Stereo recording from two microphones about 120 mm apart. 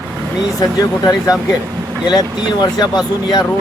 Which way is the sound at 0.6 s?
30° left (ahead or behind).